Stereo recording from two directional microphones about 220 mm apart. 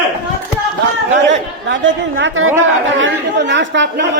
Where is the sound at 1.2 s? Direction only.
55° right (ahead or behind).